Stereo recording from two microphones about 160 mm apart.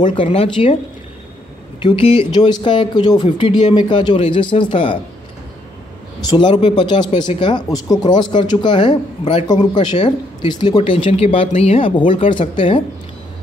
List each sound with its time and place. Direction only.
0.1 s speech: 35° left (ahead or behind)
1.8 s speech: 30° left (ahead or behind)
6.2 s speech: 30° left (ahead or behind)
9.5 s speech: 25° left (ahead or behind)